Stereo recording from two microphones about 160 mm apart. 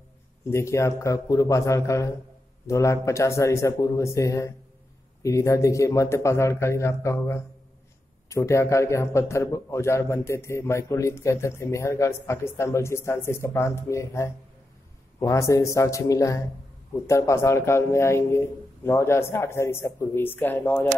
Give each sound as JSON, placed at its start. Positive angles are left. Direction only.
{"t": 0.5, "sound": "a man's voice", "side_deg": 15}